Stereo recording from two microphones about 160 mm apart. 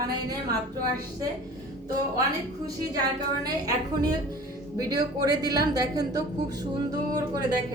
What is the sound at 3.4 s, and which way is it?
A woman's voice, 25° right (ahead or behind).